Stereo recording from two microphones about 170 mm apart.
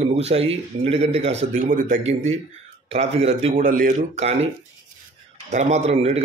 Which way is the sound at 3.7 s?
50° right (ahead or behind).